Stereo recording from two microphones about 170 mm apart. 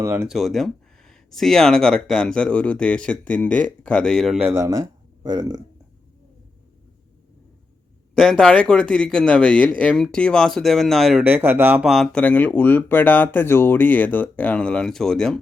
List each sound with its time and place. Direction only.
0.0 s speech: 15° right (ahead or behind)
0.3 s a man's voice: centre (ahead or behind)
4.5 s speech: 20° right (ahead or behind)
8.1 s a man's voice: centre (ahead or behind)